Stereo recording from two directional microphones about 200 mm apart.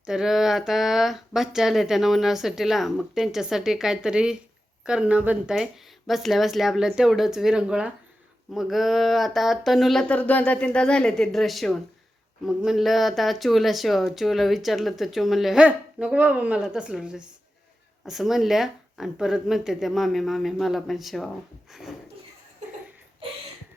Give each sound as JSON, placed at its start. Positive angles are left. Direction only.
{"t": 0.0, "sound": "speech", "side_deg": -5}